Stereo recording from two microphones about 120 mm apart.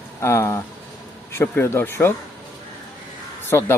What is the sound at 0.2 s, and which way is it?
Speech, 25° left (ahead or behind).